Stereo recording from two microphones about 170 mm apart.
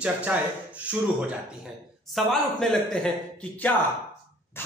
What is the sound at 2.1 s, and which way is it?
Speech, centre (ahead or behind).